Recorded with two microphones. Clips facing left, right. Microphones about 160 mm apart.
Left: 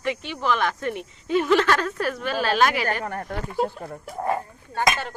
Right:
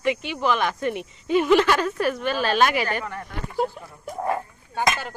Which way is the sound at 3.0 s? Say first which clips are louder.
Left 4 dB; 50° left (ahead or behind).